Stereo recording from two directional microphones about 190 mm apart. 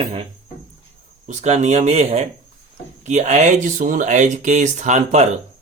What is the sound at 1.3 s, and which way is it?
Speech, 35° right (ahead or behind).